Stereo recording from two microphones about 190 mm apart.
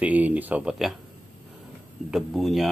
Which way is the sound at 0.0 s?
5° right (ahead or behind).